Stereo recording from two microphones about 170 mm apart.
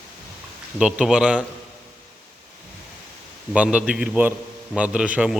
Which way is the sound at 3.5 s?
5° right (ahead or behind).